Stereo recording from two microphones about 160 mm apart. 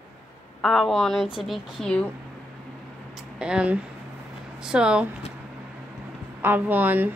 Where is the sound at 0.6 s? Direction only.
Centre (ahead or behind).